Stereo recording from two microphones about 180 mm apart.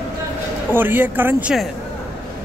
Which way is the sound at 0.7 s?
10° right (ahead or behind).